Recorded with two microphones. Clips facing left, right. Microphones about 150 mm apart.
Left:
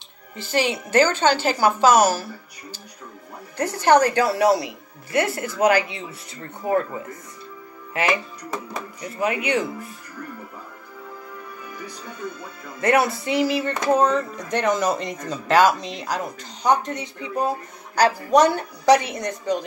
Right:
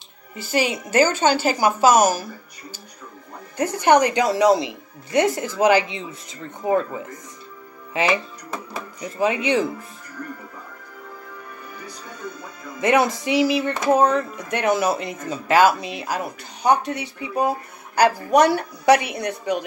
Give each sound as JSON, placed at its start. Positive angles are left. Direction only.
{"t": 0.4, "sound": "speech", "side_deg": -10}
{"t": 3.5, "sound": "speech", "side_deg": -15}
{"t": 9.2, "sound": "speech", "side_deg": -25}
{"t": 12.8, "sound": "speech", "side_deg": -20}